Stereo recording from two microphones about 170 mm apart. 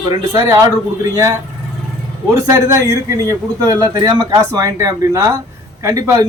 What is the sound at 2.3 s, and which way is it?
A man's voice, 20° right (ahead or behind).